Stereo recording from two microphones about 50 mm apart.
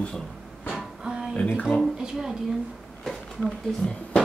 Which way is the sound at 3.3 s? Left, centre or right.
Centre.